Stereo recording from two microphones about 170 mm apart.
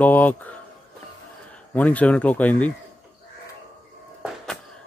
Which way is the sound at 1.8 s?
10° left (ahead or behind).